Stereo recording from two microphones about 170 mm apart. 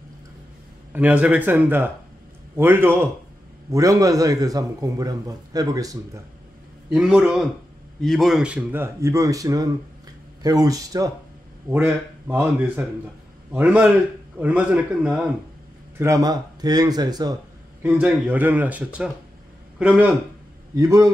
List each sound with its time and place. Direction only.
0.9 s a man's voice: 10° right (ahead or behind)
6.9 s a man's voice: 5° right (ahead or behind); by 11.1 s 20° right (ahead or behind)
11.7 s speech: 10° right (ahead or behind)
16.0 s a man's voice: 20° right (ahead or behind)
17.8 s speech: 10° right (ahead or behind)
20.7 s a man's voice: 20° right (ahead or behind)